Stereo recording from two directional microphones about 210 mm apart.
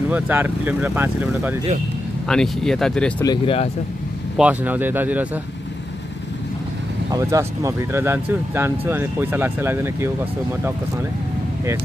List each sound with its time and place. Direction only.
0.1 s speech: 10° right (ahead or behind)
2.2 s speech: 5° left (ahead or behind)
3.3 s speech: 25° left (ahead or behind)
4.4 s speech: 10° right (ahead or behind)
7.1 s speech: 15° right (ahead or behind)